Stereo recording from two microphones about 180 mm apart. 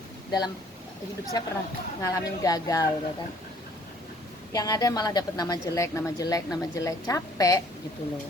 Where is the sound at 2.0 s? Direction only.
20° left (ahead or behind).